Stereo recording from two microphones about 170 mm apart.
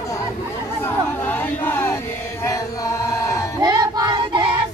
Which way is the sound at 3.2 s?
15° left (ahead or behind).